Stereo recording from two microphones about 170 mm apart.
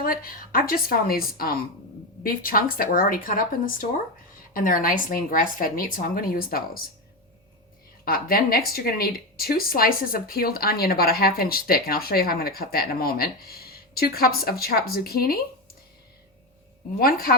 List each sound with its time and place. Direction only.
0.0 s speech: 60° left (ahead or behind)
8.0 s speech: 60° left (ahead or behind)
17.0 s speech: 60° left (ahead or behind)